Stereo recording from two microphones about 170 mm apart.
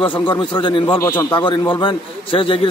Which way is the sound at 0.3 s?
30° left (ahead or behind).